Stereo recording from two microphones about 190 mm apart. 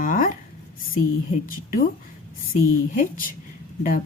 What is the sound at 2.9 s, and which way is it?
Speech, 45° left (ahead or behind).